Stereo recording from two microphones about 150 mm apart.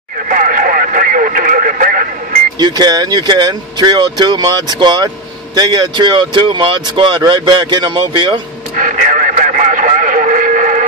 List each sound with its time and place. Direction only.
0.3 s radio: 65° right (ahead or behind)
2.6 s speech: 25° right (ahead or behind)
8.7 s radio: 60° right (ahead or behind)